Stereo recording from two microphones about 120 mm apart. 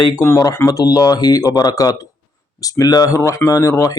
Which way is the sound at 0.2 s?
25° left (ahead or behind).